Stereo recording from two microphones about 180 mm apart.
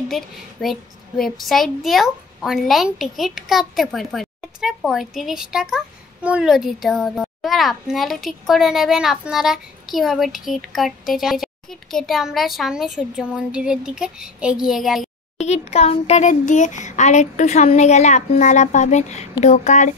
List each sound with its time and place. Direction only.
0.1 s a child's voice: centre (ahead or behind)
15.3 s speech: 40° left (ahead or behind)